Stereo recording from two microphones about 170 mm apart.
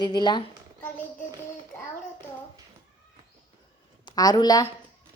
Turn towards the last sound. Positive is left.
turn(degrees=20)  # may be behind; listen again after turning